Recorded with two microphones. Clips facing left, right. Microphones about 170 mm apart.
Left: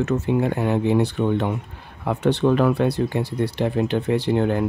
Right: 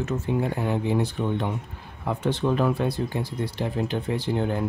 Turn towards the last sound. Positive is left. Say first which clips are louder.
# left 6 dB
turn(degrees=70)  # may be behind; listen again after turning